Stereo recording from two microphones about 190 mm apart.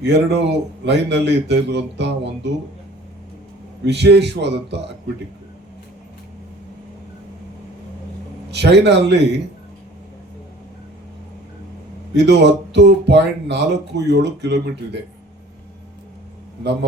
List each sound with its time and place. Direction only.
0.0 s speech: 65° right (ahead or behind)
3.8 s speech: 60° right (ahead or behind)
8.4 s speech: 65° right (ahead or behind)
12.1 s speech: 60° right (ahead or behind)